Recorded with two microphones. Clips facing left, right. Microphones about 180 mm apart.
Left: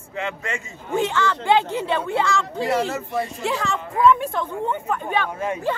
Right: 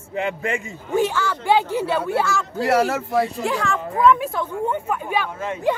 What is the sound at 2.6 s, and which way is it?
Speech, 75° right (ahead or behind).